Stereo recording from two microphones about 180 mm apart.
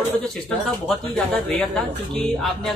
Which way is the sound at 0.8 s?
5° left (ahead or behind).